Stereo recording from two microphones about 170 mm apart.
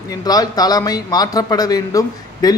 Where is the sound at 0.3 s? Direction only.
20° left (ahead or behind).